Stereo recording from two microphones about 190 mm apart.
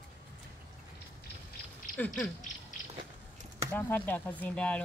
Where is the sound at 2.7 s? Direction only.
40° left (ahead or behind).